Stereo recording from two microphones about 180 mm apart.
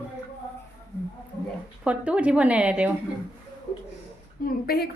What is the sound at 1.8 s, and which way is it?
A woman's voice, 5° right (ahead or behind).